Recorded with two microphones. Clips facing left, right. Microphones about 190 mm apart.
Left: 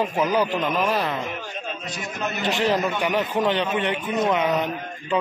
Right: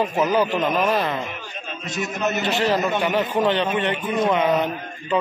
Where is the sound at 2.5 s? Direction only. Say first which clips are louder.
Left 1 dB; 15° left (ahead or behind).